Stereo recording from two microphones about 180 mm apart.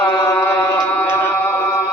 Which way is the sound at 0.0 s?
15° left (ahead or behind).